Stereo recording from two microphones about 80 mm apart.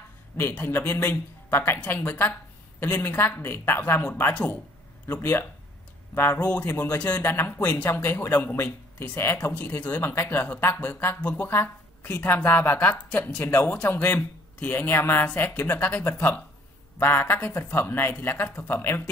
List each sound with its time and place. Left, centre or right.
0.4 s speech: left
4.0 s speech: centre
6.1 s speech: left
6.4 s a woman's voice: centre
13.4 s speech: left
13.8 s speech: centre